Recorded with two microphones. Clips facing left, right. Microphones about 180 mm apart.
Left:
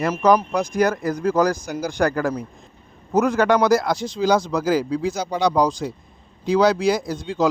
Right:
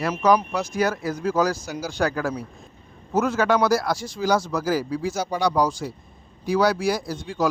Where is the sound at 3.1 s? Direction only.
15° left (ahead or behind).